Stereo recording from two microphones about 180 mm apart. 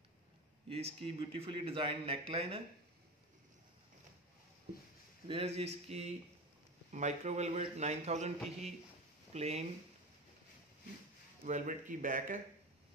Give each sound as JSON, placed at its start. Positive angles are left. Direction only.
{"t": 0.7, "sound": "a man's voice", "side_deg": -35}
{"t": 5.3, "sound": "a man's voice", "side_deg": -35}
{"t": 11.4, "sound": "speech", "side_deg": -45}